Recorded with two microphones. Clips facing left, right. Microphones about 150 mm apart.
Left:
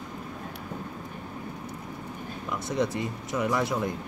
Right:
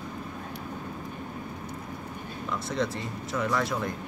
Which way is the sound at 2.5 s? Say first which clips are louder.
Left 2 dB; 15° left (ahead or behind).